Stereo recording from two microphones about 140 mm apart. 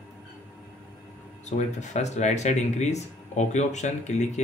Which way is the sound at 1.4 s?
60° left (ahead or behind).